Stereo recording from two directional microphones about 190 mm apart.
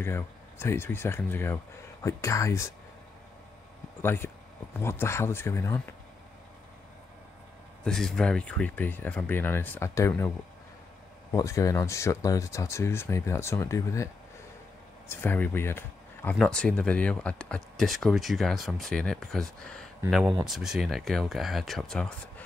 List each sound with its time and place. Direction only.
0.0 s speech: 10° left (ahead or behind)
4.0 s speech: 10° left (ahead or behind)
7.8 s speech: centre (ahead or behind)
11.3 s speech: 15° left (ahead or behind)